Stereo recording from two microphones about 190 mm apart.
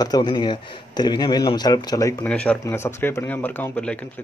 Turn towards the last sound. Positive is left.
turn(degrees=5)  # may be behind; listen again after turning